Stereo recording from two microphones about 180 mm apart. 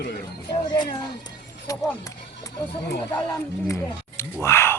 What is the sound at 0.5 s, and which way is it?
Speech, 25° left (ahead or behind).